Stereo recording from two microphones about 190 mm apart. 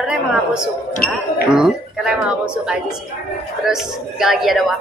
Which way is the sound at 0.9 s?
55° left (ahead or behind).